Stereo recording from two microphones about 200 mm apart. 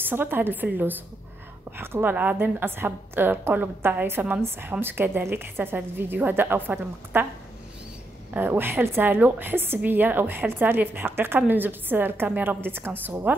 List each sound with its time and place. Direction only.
0.0 s a woman's voice: 10° right (ahead or behind)
8.3 s a woman's voice: 10° right (ahead or behind)